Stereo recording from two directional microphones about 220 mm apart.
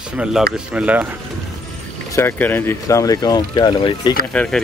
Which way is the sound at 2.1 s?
10° left (ahead or behind).